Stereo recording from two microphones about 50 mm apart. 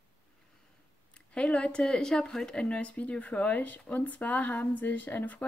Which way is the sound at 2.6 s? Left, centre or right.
Left.